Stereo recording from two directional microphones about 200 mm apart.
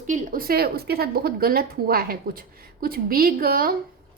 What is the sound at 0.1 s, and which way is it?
A woman's voice, 45° right (ahead or behind).